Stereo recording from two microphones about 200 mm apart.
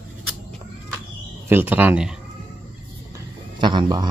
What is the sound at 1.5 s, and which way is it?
Speech, 10° right (ahead or behind).